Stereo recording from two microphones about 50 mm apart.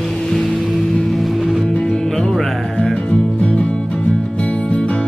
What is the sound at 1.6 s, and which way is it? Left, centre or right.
Music, left.